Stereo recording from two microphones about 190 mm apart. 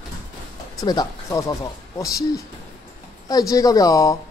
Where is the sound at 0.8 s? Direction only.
20° left (ahead or behind).